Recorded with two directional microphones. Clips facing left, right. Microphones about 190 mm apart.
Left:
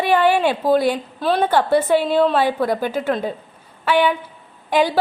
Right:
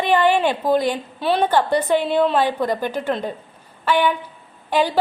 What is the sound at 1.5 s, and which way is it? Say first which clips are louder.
A woman's voice: left 2 dB; 5° left (ahead or behind).